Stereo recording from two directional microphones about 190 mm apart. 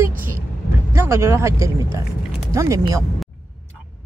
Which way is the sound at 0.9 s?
15° right (ahead or behind).